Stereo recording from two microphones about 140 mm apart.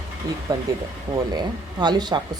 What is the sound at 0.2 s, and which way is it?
Speech, 25° right (ahead or behind).